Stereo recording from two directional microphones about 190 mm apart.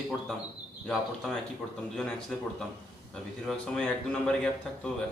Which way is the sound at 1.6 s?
Centre (ahead or behind).